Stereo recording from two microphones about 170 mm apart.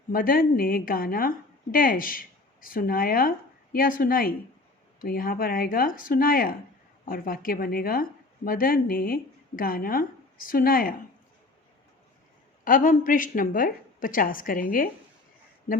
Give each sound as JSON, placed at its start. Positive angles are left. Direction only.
{"t": 0.1, "sound": "a woman's voice", "side_deg": 55}
{"t": 12.6, "sound": "a woman's voice", "side_deg": 55}